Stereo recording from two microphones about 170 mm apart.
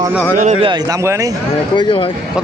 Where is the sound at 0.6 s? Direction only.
20° right (ahead or behind).